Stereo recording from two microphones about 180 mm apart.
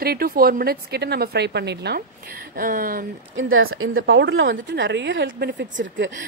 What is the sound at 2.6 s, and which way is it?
Speech, 50° right (ahead or behind).